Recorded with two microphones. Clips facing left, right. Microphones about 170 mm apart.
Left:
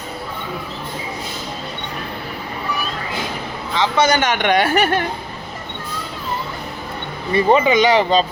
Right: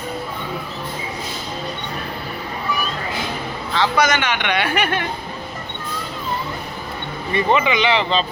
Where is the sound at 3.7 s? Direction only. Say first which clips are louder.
Left 1 dB; 20° left (ahead or behind).